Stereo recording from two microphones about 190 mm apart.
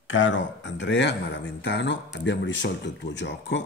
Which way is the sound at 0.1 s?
85° left.